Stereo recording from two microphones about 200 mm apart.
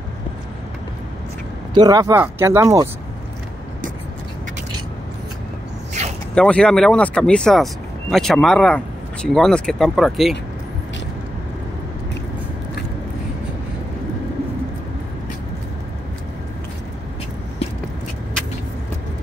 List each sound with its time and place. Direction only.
1.7 s speech: 20° right (ahead or behind)
6.3 s speech: 5° left (ahead or behind)